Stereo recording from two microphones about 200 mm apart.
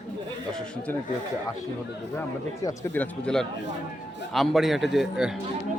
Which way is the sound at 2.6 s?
10° left (ahead or behind).